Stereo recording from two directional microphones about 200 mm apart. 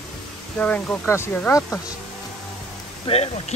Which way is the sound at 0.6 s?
5° left (ahead or behind).